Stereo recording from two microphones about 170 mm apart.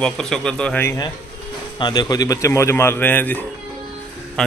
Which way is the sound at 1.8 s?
25° left (ahead or behind).